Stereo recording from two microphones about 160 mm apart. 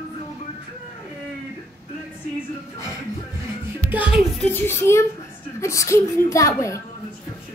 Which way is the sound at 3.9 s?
5° right (ahead or behind).